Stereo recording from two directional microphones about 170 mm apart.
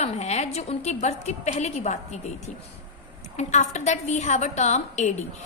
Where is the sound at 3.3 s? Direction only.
45° left (ahead or behind).